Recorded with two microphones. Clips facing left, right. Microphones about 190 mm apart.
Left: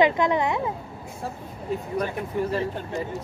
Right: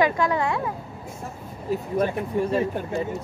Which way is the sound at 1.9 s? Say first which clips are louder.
Right 4 dB; 25° right (ahead or behind).